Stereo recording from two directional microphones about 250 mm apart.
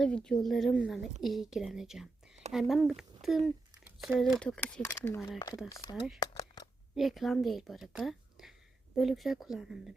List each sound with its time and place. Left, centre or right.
0.0 s speech: centre
6.1 s a sound: centre
6.9 s speech: centre